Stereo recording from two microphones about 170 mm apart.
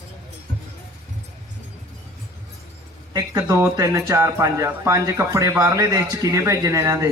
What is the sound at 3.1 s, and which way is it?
Speech, 20° right (ahead or behind).